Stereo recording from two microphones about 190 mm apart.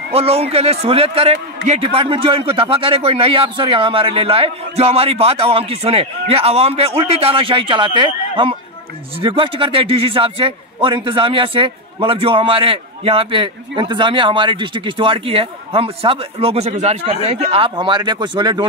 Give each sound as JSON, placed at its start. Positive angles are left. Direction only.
{"t": 0.1, "sound": "a man's voice", "side_deg": -30}